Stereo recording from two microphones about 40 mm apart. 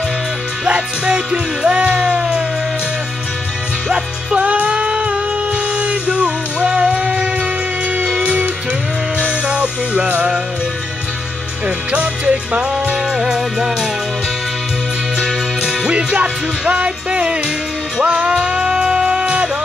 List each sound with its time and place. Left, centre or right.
0.7 s music: right
4.4 s a sound: right
7.9 s music: right
11.6 s music: right
16.1 s music: right